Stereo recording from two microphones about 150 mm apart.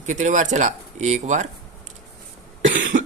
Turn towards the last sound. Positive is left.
turn(degrees=-60)  # may be behind; listen again after turning